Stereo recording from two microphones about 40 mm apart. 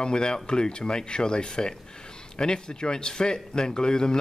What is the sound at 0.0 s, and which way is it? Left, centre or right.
Speech, left.